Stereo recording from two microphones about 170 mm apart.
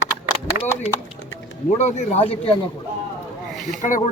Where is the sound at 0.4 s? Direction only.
15° left (ahead or behind).